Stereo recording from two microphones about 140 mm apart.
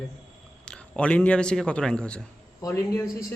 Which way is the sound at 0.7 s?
5° left (ahead or behind).